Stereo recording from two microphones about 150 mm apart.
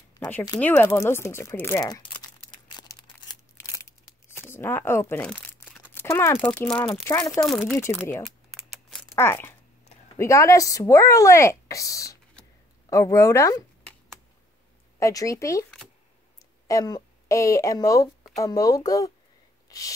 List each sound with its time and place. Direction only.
0.6 s crumpling: 15° left (ahead or behind)
4.4 s speech: 15° left (ahead or behind)
7.1 s speech: 20° left (ahead or behind)
7.3 s speech: centre (ahead or behind)
8.2 s typing: centre (ahead or behind)
9.1 s speech: 15° left (ahead or behind)
15.0 s speech: 20° left (ahead or behind)
16.6 s speech: 25° left (ahead or behind)
19.7 s a sound: 25° left (ahead or behind)